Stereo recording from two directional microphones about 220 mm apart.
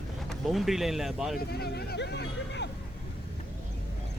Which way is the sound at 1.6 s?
50° left (ahead or behind).